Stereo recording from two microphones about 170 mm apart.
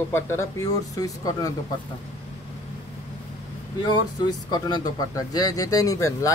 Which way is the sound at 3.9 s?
25° left (ahead or behind).